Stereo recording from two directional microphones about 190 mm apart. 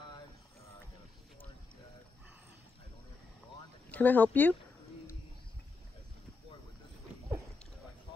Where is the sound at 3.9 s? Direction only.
10° left (ahead or behind).